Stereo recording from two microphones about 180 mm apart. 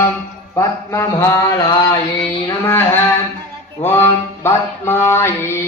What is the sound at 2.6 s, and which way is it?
Mantra, 10° left (ahead or behind).